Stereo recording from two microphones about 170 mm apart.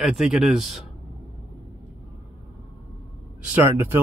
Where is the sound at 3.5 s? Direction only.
15° right (ahead or behind).